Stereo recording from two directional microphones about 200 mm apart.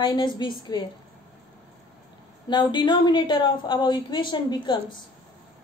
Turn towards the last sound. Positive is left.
turn(degrees=20)  # may be behind; listen again after turning